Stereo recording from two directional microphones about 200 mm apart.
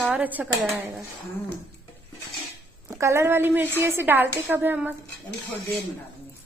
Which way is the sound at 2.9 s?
15° right (ahead or behind).